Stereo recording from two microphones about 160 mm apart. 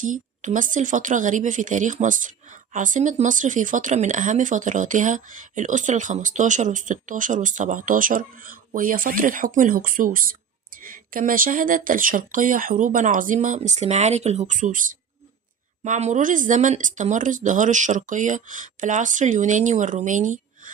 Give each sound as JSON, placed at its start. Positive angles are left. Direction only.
{"t": 0.0, "sound": "a woman's voice", "side_deg": -55}
{"t": 15.8, "sound": "a woman's voice", "side_deg": -45}